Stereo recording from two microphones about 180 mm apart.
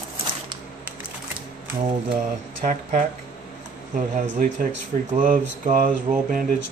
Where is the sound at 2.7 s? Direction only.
45° right (ahead or behind).